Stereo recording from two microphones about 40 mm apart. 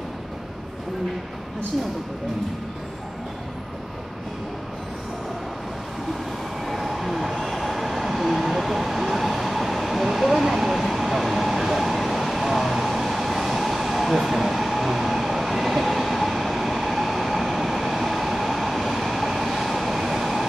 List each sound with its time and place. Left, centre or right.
6.6 s train: centre